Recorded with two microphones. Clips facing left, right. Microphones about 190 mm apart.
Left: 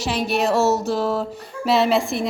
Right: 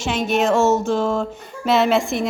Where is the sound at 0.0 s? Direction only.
Centre (ahead or behind).